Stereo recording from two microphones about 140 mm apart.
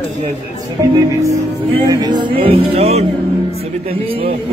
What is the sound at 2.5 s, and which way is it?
Speech, 45° right (ahead or behind).